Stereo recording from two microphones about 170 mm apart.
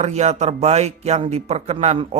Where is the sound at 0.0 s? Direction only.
40° right (ahead or behind).